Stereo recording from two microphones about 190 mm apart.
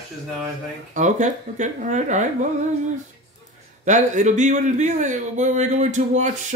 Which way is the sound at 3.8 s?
40° right (ahead or behind).